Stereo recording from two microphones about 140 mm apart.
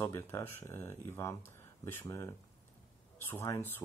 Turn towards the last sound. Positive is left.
turn(degrees=15)  # may be behind; listen again after turning